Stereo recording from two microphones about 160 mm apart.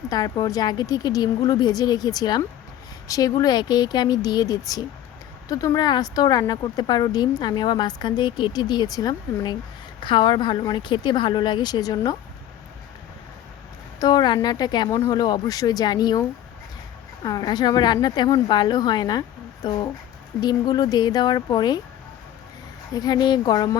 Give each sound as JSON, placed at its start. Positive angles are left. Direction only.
{"t": 0.1, "sound": "a woman's voice", "side_deg": 25}
{"t": 14.0, "sound": "a woman's voice", "side_deg": 25}
{"t": 17.2, "sound": "a woman's voice", "side_deg": 25}
{"t": 23.0, "sound": "a woman's voice", "side_deg": 25}